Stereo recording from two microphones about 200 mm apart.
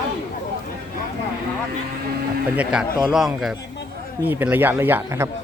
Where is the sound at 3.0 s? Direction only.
Centre (ahead or behind).